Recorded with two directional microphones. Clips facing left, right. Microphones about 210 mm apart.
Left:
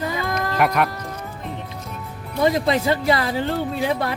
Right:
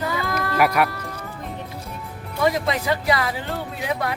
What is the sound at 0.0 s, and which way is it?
Music, 20° left (ahead or behind).